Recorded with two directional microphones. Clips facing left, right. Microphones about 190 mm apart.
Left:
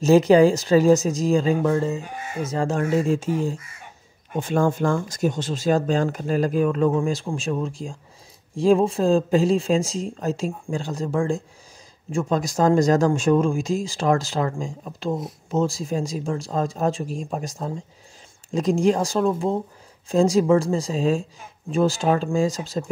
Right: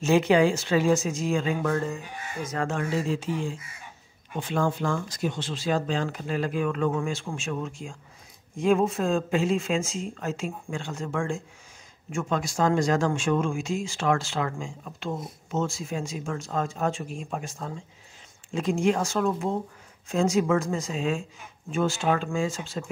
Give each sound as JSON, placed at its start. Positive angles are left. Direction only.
{"t": 0.0, "sound": "speech", "side_deg": 40}
{"t": 1.7, "sound": "speech", "side_deg": 25}
{"t": 2.8, "sound": "speech", "side_deg": 50}